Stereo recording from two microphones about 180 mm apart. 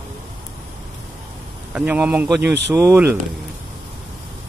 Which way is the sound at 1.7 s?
10° right (ahead or behind).